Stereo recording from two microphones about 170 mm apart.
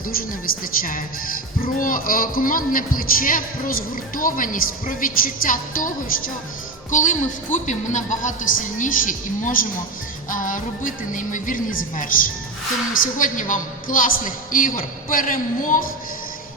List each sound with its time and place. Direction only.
0.1 s a man's voice: 60° left (ahead or behind)